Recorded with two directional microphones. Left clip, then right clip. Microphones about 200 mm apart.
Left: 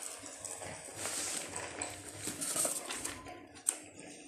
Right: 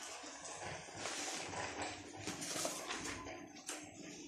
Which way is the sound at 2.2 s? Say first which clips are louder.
Left 4 dB; 45° left (ahead or behind).